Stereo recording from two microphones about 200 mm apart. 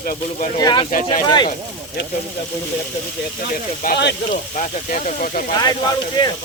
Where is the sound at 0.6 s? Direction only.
20° left (ahead or behind).